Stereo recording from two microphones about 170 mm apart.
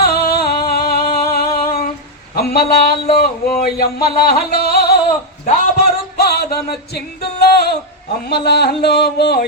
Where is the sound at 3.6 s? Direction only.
65° left (ahead or behind).